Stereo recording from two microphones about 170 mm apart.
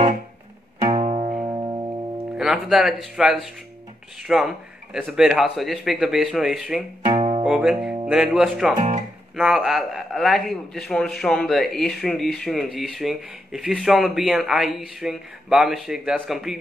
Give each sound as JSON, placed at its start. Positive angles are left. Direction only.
{"t": 0.8, "sound": "music", "side_deg": -30}
{"t": 2.3, "sound": "a man's voice", "side_deg": -5}
{"t": 7.1, "sound": "music", "side_deg": -35}
{"t": 7.4, "sound": "a man's voice", "side_deg": -5}